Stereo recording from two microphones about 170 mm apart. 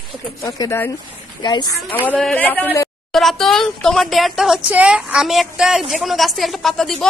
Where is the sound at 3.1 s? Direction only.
Centre (ahead or behind).